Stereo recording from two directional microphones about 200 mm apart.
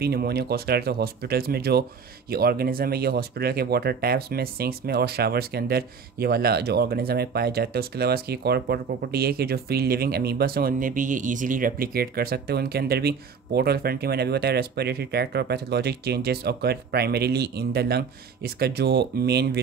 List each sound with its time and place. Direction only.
0.0 s speech: 50° right (ahead or behind)